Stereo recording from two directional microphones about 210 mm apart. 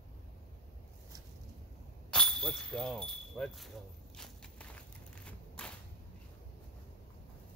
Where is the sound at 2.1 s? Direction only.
5° left (ahead or behind).